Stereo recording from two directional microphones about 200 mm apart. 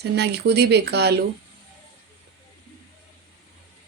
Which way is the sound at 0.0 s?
55° right (ahead or behind).